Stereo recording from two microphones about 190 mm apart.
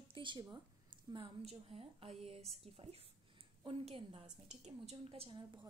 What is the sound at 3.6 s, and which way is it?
A woman's voice, 30° right (ahead or behind).